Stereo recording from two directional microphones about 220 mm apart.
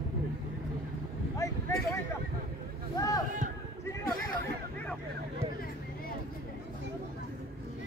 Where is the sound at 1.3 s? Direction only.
15° left (ahead or behind).